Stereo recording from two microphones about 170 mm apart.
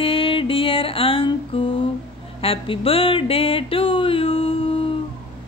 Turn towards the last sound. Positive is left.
turn(degrees=30)  # may be behind; listen again after turning